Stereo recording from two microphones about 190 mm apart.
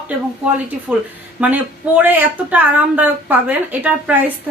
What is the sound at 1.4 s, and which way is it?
Speech, 10° right (ahead or behind).